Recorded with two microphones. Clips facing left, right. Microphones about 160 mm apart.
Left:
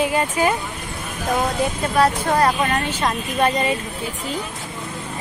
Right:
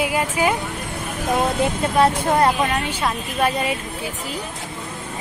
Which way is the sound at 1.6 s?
25° right (ahead or behind).